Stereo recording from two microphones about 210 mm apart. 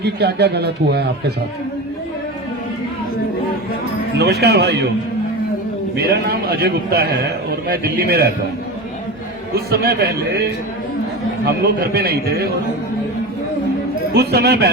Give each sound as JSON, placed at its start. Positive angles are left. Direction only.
{"t": 0.0, "sound": "a man's voice", "side_deg": -50}
{"t": 4.2, "sound": "a man's voice", "side_deg": -50}
{"t": 6.0, "sound": "a man's voice", "side_deg": -50}
{"t": 9.6, "sound": "a man's voice", "side_deg": -50}
{"t": 11.9, "sound": "a man's voice", "side_deg": -50}
{"t": 14.1, "sound": "a man's voice", "side_deg": -50}